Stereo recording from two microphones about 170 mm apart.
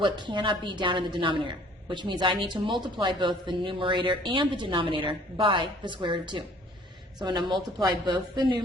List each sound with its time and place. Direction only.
0.0 s a woman's voice: 30° right (ahead or behind)